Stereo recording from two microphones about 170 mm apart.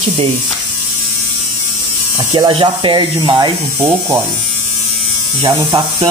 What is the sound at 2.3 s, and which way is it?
Speech, 30° right (ahead or behind).